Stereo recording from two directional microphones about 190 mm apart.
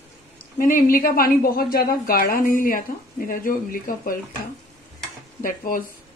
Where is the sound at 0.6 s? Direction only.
45° left (ahead or behind).